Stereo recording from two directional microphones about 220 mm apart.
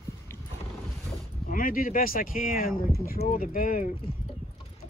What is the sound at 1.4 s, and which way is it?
Speech, 40° left (ahead or behind).